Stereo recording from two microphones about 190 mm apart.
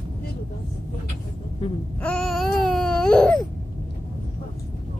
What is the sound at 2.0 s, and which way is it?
Baby cry, 5° left (ahead or behind).